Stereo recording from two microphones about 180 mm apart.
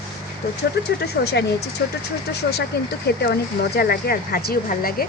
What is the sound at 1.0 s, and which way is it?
Speech, 65° left (ahead or behind).